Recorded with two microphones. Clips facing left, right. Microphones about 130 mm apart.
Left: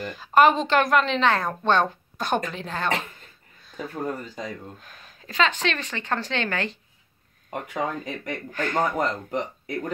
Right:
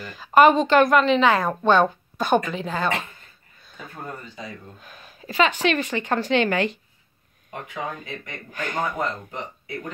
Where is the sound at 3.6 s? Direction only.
Centre (ahead or behind).